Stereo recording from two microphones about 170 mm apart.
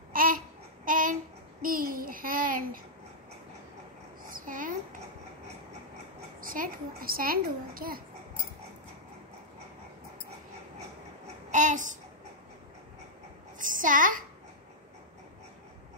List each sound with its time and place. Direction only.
0.1 s babbling: 55° right (ahead or behind)
0.8 s a sound: 55° right (ahead or behind)
4.2 s babbling: 55° right (ahead or behind)
6.4 s a child's voice: 55° right (ahead or behind)
11.5 s babbling: 50° right (ahead or behind)
13.6 s a sound: 50° right (ahead or behind)